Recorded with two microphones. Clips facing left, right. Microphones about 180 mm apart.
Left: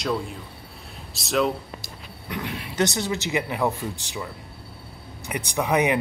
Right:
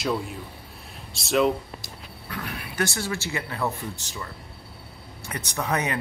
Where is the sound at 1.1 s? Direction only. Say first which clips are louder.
Right 1 dB; centre (ahead or behind).